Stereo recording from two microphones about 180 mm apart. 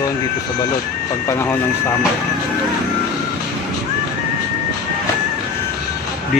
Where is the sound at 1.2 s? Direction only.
15° left (ahead or behind).